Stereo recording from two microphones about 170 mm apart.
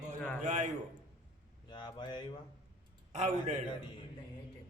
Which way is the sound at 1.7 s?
25° left (ahead or behind).